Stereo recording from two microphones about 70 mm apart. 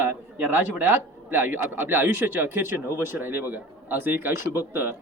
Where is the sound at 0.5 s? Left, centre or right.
Right.